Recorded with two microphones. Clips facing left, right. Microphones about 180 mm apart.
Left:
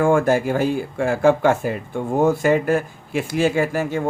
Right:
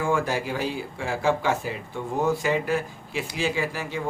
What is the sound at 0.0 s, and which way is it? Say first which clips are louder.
Speech: left 8 dB; 50° left (ahead or behind).